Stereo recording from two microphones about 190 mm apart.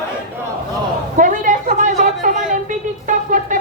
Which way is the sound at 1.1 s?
45° right (ahead or behind).